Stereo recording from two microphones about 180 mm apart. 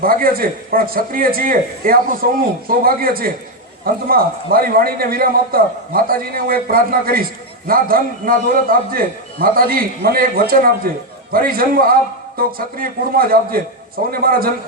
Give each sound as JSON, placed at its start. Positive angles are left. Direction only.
{"t": 0.0, "sound": "a man's voice", "side_deg": -50}